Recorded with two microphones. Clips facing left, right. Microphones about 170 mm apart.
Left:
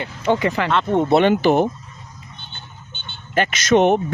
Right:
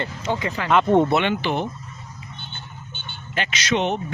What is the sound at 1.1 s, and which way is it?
Speech, 40° left (ahead or behind).